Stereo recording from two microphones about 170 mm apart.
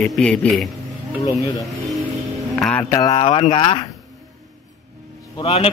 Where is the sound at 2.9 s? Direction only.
20° left (ahead or behind).